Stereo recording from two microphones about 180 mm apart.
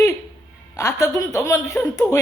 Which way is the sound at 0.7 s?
20° left (ahead or behind).